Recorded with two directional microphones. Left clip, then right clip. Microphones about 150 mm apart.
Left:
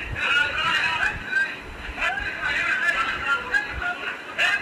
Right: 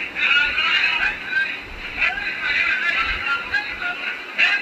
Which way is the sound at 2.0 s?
45° left (ahead or behind).